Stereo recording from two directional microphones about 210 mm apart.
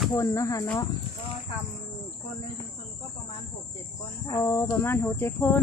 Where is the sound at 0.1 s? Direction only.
15° left (ahead or behind).